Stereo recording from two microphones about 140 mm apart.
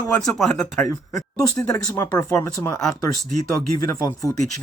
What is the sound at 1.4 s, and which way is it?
Speech, 25° left (ahead or behind).